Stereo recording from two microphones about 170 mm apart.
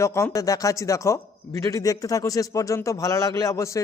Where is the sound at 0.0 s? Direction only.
15° left (ahead or behind).